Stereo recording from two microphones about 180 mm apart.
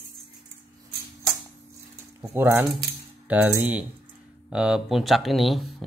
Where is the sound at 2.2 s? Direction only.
15° right (ahead or behind).